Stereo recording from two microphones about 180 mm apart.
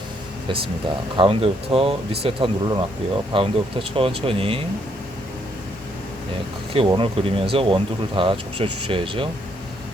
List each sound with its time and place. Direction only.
1.1 s speech: 30° right (ahead or behind)
6.7 s speech: 30° right (ahead or behind)